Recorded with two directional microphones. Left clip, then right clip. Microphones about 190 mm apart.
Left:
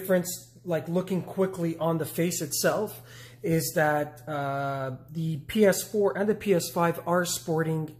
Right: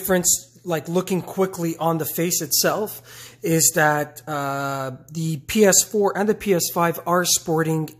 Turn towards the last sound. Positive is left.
turn(degrees=-40)  # may be behind; listen again after turning